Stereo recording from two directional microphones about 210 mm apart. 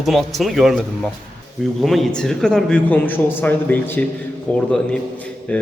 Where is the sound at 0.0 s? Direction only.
Centre (ahead or behind).